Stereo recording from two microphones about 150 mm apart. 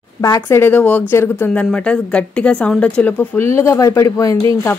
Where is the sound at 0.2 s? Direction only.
20° left (ahead or behind).